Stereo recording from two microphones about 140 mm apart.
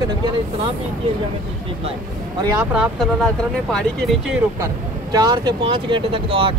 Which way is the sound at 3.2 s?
5° left (ahead or behind).